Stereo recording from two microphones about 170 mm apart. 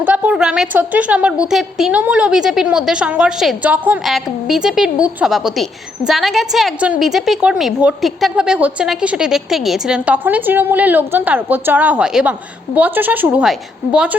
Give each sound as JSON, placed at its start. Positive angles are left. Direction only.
{"t": 0.0, "sound": "a woman's voice", "side_deg": -10}